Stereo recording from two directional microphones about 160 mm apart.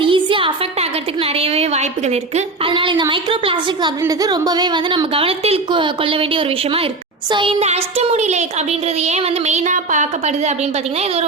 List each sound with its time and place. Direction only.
0.0 s a woman's voice: 30° right (ahead or behind)
7.3 s a sound: 30° right (ahead or behind)
7.6 s a woman's voice: 40° right (ahead or behind)